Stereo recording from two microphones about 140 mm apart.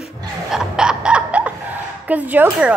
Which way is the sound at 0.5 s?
5° right (ahead or behind).